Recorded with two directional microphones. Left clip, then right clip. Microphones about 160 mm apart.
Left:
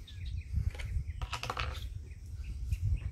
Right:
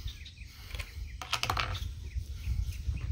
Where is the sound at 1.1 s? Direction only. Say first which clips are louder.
Right 6 dB; 40° right (ahead or behind).